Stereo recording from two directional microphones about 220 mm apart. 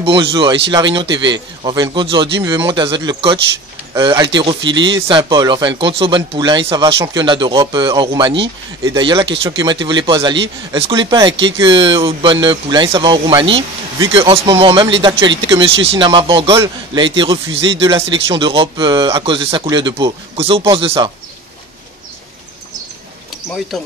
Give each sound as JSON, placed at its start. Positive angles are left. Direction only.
{"t": 0.0, "sound": "speech", "side_deg": -25}
{"t": 17.5, "sound": "speech", "side_deg": -55}
{"t": 18.3, "sound": "speech", "side_deg": -25}